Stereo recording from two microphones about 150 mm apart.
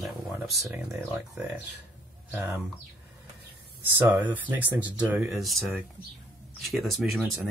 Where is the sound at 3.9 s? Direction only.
15° right (ahead or behind).